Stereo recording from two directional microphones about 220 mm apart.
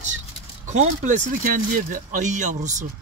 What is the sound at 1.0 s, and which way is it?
Speech, 35° right (ahead or behind).